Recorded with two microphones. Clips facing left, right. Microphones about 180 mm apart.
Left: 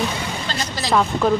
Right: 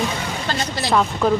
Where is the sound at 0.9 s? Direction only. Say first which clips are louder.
Left 1 dB; centre (ahead or behind).